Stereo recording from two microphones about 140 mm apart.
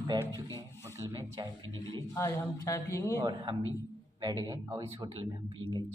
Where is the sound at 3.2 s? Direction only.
30° right (ahead or behind).